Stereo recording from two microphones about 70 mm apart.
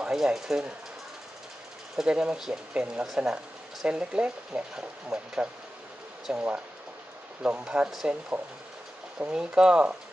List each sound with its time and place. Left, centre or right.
0.0 s speech: centre
2.0 s speech: centre
9.2 s speech: centre